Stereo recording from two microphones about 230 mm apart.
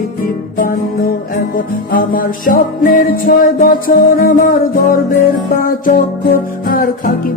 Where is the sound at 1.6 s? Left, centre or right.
Left.